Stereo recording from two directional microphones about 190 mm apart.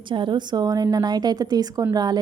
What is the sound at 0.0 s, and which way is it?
A woman's voice, 25° right (ahead or behind).